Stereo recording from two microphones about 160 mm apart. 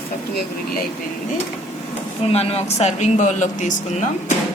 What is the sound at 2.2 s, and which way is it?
Speech, 40° left (ahead or behind).